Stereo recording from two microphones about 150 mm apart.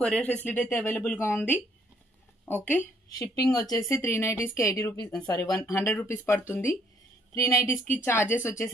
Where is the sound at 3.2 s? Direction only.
25° left (ahead or behind).